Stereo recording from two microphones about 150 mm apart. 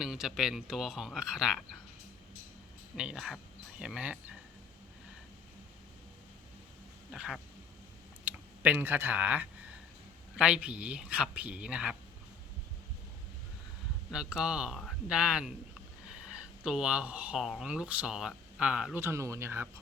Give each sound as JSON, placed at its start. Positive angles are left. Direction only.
{"t": 0.0, "sound": "speech", "side_deg": -5}
{"t": 2.9, "sound": "speech", "side_deg": -5}
{"t": 7.1, "sound": "speech", "side_deg": -5}
{"t": 14.1, "sound": "speech", "side_deg": -5}
{"t": 19.0, "sound": "speech", "side_deg": -20}